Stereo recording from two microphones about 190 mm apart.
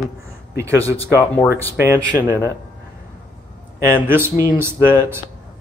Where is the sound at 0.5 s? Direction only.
15° right (ahead or behind).